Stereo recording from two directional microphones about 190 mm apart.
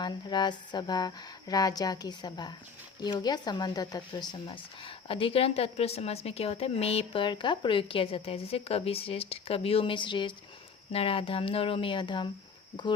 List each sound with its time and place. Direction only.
0.0 s speech: 25° left (ahead or behind)